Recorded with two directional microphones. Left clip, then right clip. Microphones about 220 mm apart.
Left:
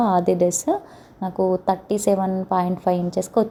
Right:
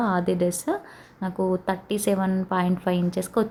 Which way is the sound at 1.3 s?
15° right (ahead or behind).